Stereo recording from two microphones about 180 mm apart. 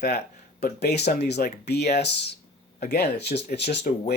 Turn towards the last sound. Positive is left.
turn(degrees=65)  # may be behind; listen again after turning